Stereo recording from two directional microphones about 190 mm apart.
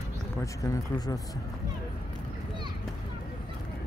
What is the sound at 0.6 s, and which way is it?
Speech, 20° left (ahead or behind).